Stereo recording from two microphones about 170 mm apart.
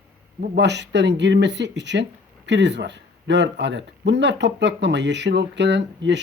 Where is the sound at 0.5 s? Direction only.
90° right.